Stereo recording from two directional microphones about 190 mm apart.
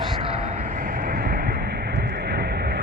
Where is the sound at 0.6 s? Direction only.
45° right (ahead or behind).